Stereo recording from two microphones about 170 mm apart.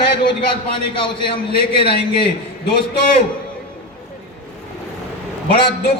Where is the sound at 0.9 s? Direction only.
30° left (ahead or behind).